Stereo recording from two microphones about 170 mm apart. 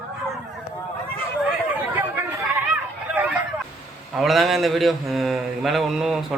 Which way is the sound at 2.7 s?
10° right (ahead or behind).